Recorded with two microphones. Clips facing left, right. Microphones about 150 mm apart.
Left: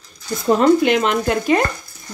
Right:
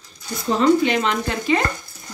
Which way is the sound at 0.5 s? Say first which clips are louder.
Left 2 dB; 50° left (ahead or behind).